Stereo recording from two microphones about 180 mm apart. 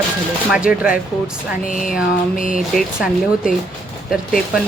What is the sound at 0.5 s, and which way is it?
Speech, 5° right (ahead or behind).